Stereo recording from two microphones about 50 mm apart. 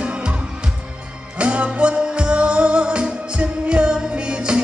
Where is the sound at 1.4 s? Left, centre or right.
Right.